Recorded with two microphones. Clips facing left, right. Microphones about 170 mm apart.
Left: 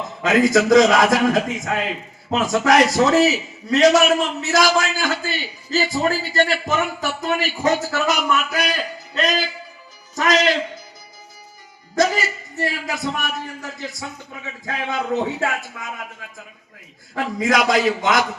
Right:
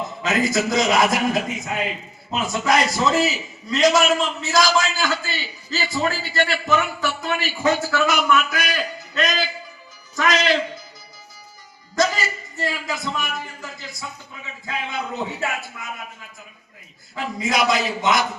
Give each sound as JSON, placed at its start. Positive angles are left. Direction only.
{"t": 0.4, "sound": "a man's voice", "side_deg": 90}
{"t": 10.2, "sound": "a man's voice", "side_deg": 40}
{"t": 11.9, "sound": "a man's voice", "side_deg": 60}
{"t": 14.6, "sound": "a man's voice", "side_deg": 85}
{"t": 17.2, "sound": "speech", "side_deg": 90}